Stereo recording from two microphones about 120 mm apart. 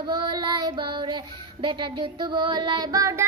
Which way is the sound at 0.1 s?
35° right (ahead or behind).